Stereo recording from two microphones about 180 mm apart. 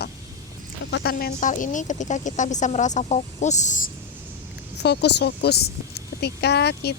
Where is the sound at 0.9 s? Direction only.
75° left (ahead or behind); by 3.8 s 40° left (ahead or behind).